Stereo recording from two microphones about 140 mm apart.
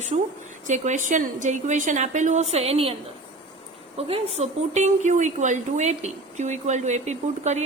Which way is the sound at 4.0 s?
45° right (ahead or behind).